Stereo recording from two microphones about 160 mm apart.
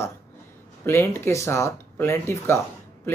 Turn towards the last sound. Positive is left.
turn(degrees=15)  # may be behind; listen again after turning